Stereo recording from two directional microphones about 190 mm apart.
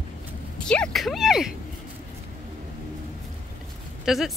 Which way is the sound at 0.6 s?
5° left (ahead or behind).